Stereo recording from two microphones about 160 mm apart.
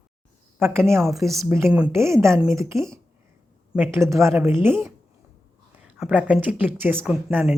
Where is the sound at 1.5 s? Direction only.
15° right (ahead or behind).